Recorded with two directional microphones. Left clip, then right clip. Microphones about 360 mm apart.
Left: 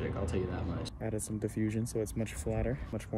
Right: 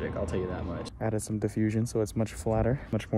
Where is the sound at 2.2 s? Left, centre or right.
Right.